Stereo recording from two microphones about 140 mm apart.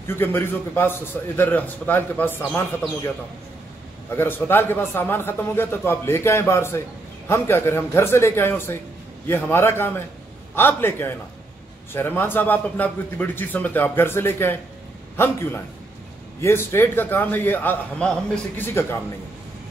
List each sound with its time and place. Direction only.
0.0 s a man's voice: 15° left (ahead or behind)
4.2 s a man's voice: 15° left (ahead or behind)